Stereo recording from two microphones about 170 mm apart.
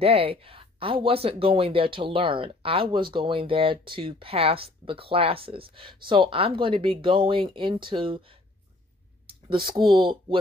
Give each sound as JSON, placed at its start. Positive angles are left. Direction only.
{"t": 0.0, "sound": "speech", "side_deg": -35}
{"t": 9.8, "sound": "speech", "side_deg": -25}